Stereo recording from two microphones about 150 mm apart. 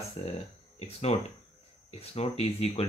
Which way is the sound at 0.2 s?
40° left (ahead or behind).